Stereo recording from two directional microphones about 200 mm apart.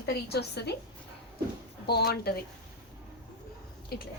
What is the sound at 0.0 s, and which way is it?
Speech, 55° left (ahead or behind).